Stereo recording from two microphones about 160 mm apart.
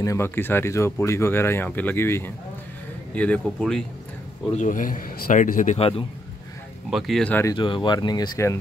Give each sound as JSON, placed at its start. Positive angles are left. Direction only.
{"t": 0.0, "sound": "speech", "side_deg": 15}
{"t": 4.6, "sound": "a man's voice", "side_deg": 55}
{"t": 5.8, "sound": "a man's voice", "side_deg": 35}
{"t": 6.9, "sound": "speech", "side_deg": 0}
{"t": 7.5, "sound": "speech", "side_deg": 30}